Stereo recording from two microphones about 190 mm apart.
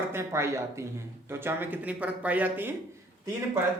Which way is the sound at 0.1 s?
15° right (ahead or behind).